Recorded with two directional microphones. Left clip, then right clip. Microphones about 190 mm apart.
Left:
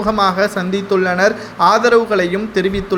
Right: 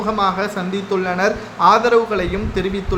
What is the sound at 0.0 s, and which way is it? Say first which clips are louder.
Speech: left 4 dB; 25° left (ahead or behind).